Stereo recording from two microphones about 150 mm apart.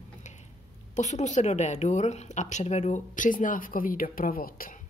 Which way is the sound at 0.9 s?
50° left (ahead or behind).